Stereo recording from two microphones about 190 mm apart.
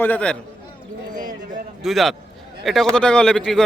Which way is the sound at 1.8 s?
Centre (ahead or behind).